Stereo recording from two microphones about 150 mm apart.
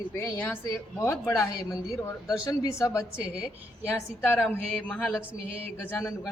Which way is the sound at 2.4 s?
20° left (ahead or behind).